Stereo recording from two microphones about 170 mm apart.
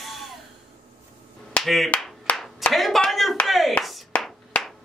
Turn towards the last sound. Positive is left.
turn(degrees=0)  # may be behind; listen again after turning